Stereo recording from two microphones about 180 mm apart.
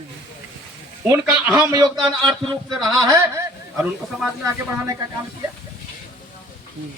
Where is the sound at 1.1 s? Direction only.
15° right (ahead or behind).